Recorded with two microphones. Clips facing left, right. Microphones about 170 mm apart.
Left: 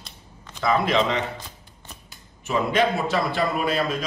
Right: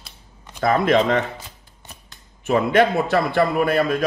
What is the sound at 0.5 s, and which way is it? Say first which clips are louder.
Speech: right 4 dB; 50° right (ahead or behind).